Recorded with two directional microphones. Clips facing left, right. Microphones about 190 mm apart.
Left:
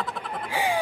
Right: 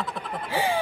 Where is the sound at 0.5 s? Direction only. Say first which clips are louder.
Right 1 dB; 15° left (ahead or behind).